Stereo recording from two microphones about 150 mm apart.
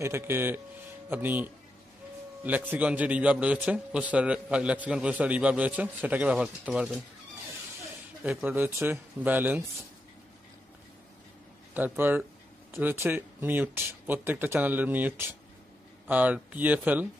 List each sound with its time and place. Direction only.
0.0 s a man's voice: 15° right (ahead or behind)
8.2 s a man's voice: 5° right (ahead or behind)
11.7 s a man's voice: 15° right (ahead or behind)